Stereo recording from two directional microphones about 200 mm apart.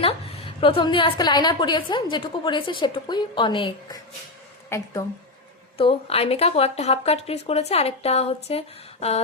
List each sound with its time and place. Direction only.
0.6 s a woman's voice: 25° left (ahead or behind)
5.7 s speech: 30° left (ahead or behind)